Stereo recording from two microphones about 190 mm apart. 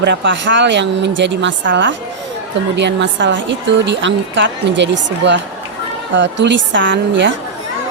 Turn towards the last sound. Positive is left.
turn(degrees=-70)  # may be behind; listen again after turning